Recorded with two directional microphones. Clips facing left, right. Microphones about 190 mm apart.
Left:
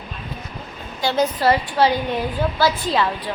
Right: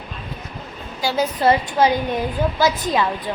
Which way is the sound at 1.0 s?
5° right (ahead or behind).